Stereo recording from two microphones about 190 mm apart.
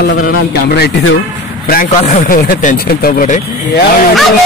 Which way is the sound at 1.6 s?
45° left (ahead or behind).